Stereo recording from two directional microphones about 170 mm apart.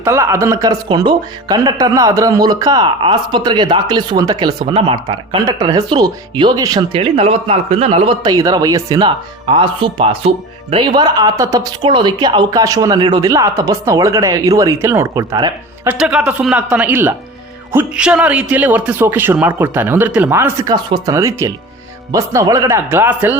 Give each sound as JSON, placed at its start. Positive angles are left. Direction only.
{"t": 0.0, "sound": "speech", "side_deg": -15}
{"t": 7.0, "sound": "speech", "side_deg": -35}
{"t": 10.9, "sound": "speech", "side_deg": -25}
{"t": 15.9, "sound": "a man's voice", "side_deg": -5}